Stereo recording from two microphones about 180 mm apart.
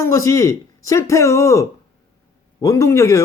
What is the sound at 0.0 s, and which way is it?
Speech, 15° left (ahead or behind).